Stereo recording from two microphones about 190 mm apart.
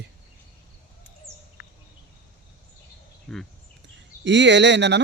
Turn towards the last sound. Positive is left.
turn(degrees=-65)  # may be behind; listen again after turning